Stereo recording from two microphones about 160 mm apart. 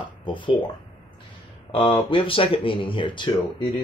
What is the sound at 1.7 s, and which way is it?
Speech, 35° left (ahead or behind).